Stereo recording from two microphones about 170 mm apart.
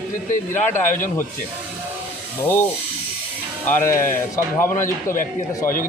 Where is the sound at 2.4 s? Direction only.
15° left (ahead or behind).